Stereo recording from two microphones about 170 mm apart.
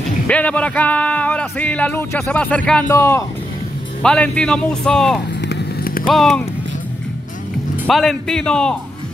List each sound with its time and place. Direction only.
0.3 s speech: 10° left (ahead or behind)
4.0 s speech: 5° left (ahead or behind)
5.5 s clip-clop: 75° left (ahead or behind)
6.1 s speech: centre (ahead or behind)
7.8 s speech: 5° left (ahead or behind)